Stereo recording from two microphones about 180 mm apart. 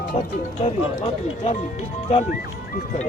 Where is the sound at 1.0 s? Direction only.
40° left (ahead or behind).